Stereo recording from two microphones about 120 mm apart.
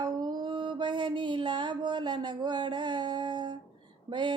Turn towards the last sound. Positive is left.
turn(degrees=-40)  # may be behind; listen again after turning